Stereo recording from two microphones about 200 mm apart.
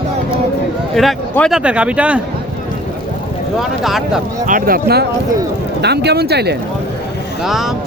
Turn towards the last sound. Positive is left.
turn(degrees=0)  # may be behind; listen again after turning